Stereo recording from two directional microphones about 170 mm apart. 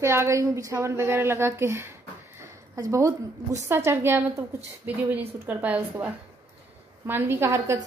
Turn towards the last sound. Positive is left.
turn(degrees=-20)  # may be behind; listen again after turning